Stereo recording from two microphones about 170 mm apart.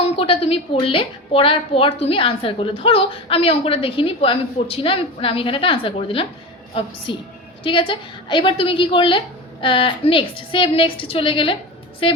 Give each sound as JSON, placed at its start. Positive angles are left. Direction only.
{"t": 0.2, "sound": "a woman's voice", "side_deg": 35}